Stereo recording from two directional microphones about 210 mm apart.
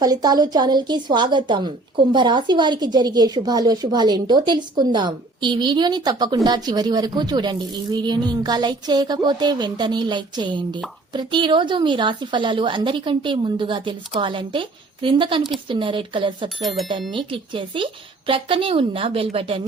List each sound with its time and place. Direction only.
0.0 s a woman's voice: 20° right (ahead or behind)